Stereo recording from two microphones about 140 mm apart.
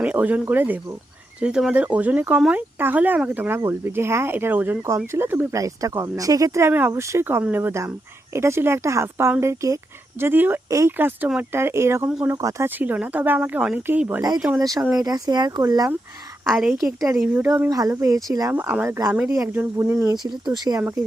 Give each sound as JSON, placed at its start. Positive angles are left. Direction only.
{"t": 0.0, "sound": "speech", "side_deg": -10}
{"t": 12.0, "sound": "speech", "side_deg": -5}
{"t": 12.3, "sound": "a woman's voice", "side_deg": -20}
{"t": 14.6, "sound": "speech", "side_deg": -25}
{"t": 16.5, "sound": "a woman's voice", "side_deg": -5}
{"t": 16.8, "sound": "speech", "side_deg": -20}
{"t": 17.7, "sound": "speech", "side_deg": -25}
{"t": 18.5, "sound": "speech", "side_deg": -10}